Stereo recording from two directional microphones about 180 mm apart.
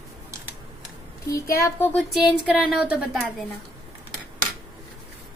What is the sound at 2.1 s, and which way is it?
Speech, centre (ahead or behind).